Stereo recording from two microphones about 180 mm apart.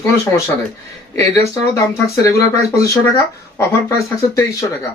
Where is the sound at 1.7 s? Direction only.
20° left (ahead or behind).